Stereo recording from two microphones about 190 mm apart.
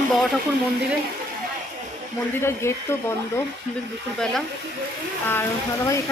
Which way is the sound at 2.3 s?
15° left (ahead or behind).